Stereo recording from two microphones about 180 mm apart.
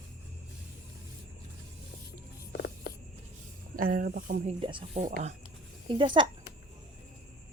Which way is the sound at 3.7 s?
50° right (ahead or behind).